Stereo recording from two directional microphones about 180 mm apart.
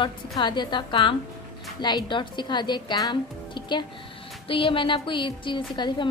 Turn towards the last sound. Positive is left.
turn(degrees=25)  # may be behind; listen again after turning